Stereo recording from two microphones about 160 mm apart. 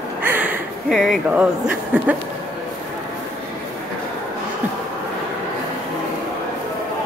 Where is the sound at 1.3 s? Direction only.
10° right (ahead or behind).